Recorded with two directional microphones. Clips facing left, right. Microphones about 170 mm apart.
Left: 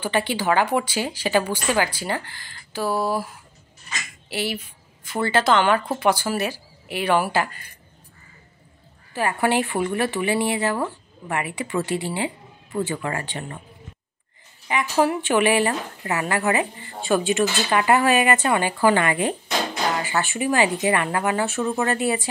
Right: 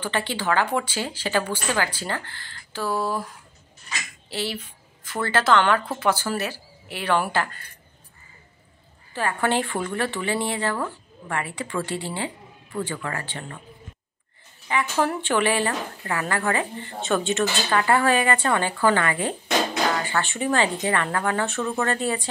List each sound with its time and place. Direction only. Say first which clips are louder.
0.0 s speech: left 4 dB; 10° left (ahead or behind)
4.3 s speech: left 2 dB; 10° left (ahead or behind)
9.1 s speech: left 2 dB; 15° left (ahead or behind)
14.7 s speech: left 3 dB; 15° left (ahead or behind)